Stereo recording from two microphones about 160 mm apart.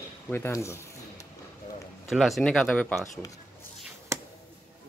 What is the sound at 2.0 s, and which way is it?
Speech, centre (ahead or behind).